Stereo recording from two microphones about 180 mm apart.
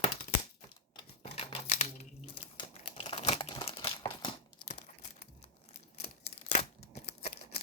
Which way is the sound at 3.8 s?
20° left (ahead or behind).